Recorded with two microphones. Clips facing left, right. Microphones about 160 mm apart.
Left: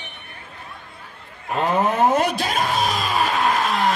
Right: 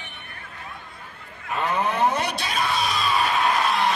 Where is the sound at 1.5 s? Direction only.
40° left (ahead or behind).